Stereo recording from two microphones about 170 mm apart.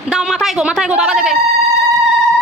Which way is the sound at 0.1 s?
5° right (ahead or behind).